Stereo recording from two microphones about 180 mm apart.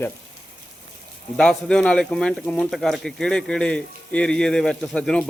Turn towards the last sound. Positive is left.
turn(degrees=5)  # may be behind; listen again after turning